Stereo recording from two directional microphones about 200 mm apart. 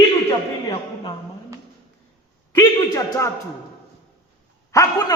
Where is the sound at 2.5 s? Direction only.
15° left (ahead or behind).